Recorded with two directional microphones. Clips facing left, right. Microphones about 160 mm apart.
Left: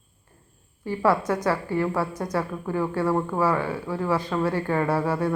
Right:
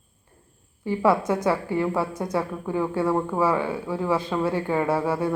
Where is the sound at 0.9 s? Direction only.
15° right (ahead or behind).